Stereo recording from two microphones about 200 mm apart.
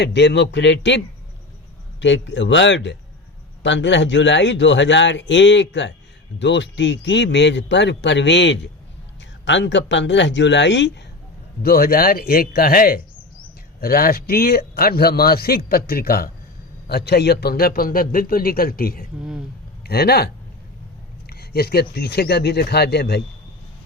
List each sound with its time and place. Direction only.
0.0 s a man's voice: 60° left (ahead or behind)
11.6 s a man's voice: 50° left (ahead or behind)